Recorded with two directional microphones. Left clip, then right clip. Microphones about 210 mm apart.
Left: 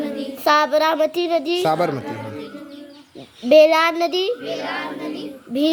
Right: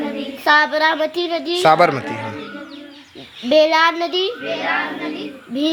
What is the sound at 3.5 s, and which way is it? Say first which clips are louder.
Speech: left 1 dB; 45° left (ahead or behind).